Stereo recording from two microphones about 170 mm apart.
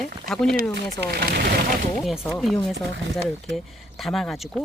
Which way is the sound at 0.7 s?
70° right (ahead or behind).